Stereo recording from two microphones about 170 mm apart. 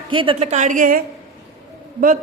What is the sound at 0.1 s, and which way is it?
A woman's voice, 30° right (ahead or behind).